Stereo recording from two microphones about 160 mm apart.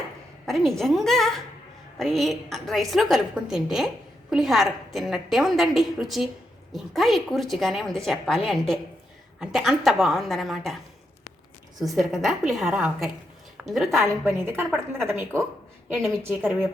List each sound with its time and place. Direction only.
0.4 s a woman's voice: centre (ahead or behind)
11.8 s a woman's voice: centre (ahead or behind)
14.4 s a woman's voice: 15° right (ahead or behind)